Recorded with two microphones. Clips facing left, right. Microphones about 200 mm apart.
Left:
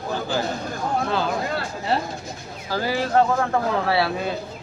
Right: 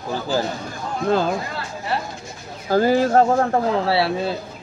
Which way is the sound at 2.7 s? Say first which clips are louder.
Right 7 dB; 45° right (ahead or behind).